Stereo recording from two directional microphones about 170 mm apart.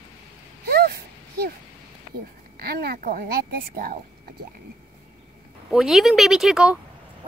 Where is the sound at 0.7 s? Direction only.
70° right (ahead or behind).